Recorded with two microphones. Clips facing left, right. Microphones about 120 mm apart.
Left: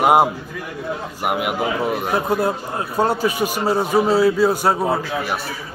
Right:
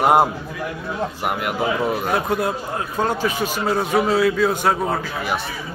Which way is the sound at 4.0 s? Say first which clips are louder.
Left 2 dB; 30° left (ahead or behind).